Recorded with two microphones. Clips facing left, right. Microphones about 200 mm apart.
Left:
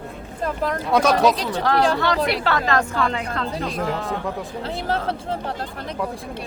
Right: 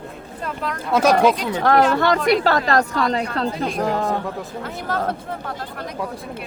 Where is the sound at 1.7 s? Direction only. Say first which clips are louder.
Right 4 dB; 55° right (ahead or behind).